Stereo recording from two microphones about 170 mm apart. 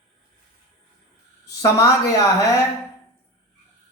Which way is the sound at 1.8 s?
20° left (ahead or behind).